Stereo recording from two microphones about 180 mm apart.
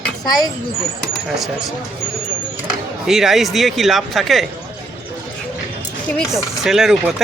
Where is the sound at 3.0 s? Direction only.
Centre (ahead or behind).